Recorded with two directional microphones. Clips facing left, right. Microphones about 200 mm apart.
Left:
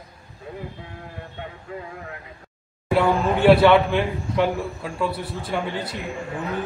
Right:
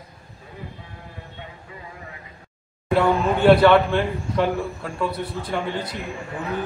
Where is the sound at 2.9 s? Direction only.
5° left (ahead or behind).